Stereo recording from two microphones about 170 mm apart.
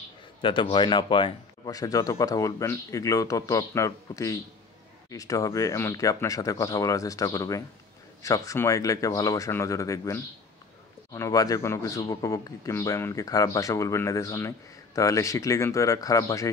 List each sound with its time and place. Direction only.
0.4 s speech: 30° left (ahead or behind)